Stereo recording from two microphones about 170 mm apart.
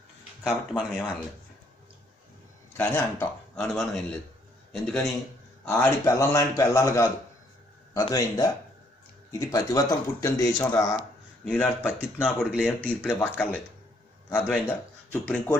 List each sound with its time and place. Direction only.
0.4 s speech: 5° left (ahead or behind)
2.8 s speech: 10° left (ahead or behind)
5.7 s a man's voice: 15° left (ahead or behind)
8.1 s a man's voice: 20° left (ahead or behind)
14.3 s a man's voice: 5° left (ahead or behind)